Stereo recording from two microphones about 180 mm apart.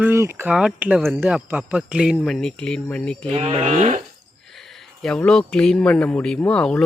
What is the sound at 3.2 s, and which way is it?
Speech, 35° right (ahead or behind).